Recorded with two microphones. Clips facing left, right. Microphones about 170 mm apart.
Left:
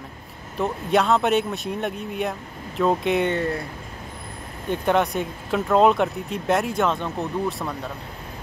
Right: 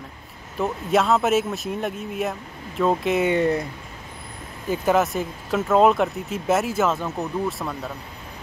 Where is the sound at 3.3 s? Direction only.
20° right (ahead or behind).